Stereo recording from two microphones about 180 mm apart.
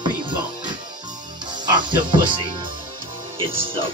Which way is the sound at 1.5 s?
25° right (ahead or behind).